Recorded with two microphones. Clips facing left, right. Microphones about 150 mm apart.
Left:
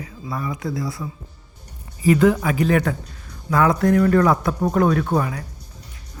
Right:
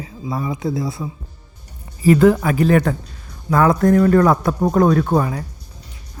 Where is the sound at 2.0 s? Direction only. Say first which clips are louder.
Right 3 dB; 40° right (ahead or behind).